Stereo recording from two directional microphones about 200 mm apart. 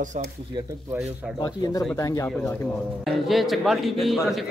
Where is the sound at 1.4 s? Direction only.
15° left (ahead or behind).